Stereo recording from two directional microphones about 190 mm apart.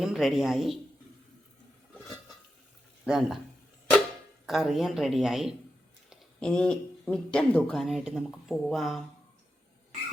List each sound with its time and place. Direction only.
0.0 s speech: centre (ahead or behind)
3.0 s speech: centre (ahead or behind)
4.4 s speech: centre (ahead or behind)